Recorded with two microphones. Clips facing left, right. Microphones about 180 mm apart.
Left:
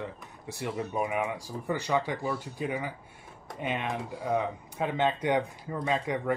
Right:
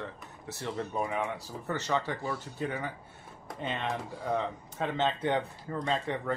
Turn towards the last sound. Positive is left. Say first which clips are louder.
# left 2 dB
turn(degrees=10)  # may be behind; listen again after turning